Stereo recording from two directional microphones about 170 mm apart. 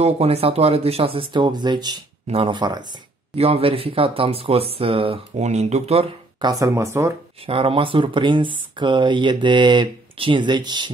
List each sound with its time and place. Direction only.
0.0 s speech: 35° right (ahead or behind)
3.3 s speech: 35° right (ahead or behind)
6.4 s speech: 20° right (ahead or behind)
7.4 s speech: 35° right (ahead or behind)